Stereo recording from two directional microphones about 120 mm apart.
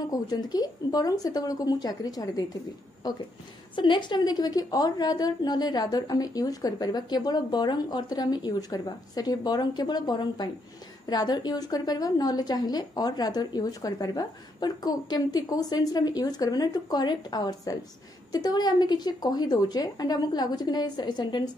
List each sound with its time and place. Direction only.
0.1 s a woman's voice: 30° left (ahead or behind)